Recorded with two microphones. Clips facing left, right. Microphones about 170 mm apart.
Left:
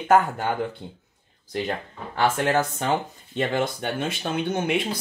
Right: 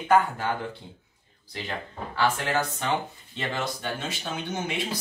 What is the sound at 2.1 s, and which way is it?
Speech, 50° left (ahead or behind).